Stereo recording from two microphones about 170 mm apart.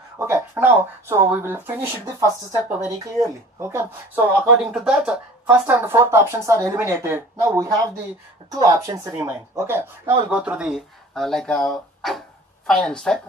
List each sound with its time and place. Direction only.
0.2 s speech: 15° right (ahead or behind); by 13.2 s 5° left (ahead or behind)